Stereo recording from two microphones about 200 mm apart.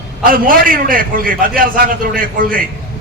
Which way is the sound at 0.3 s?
45° right (ahead or behind).